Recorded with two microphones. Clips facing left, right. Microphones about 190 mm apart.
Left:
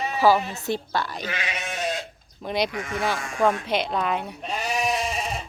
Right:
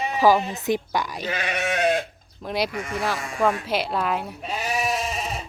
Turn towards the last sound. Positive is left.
turn(degrees=0)  # may be behind; listen again after turning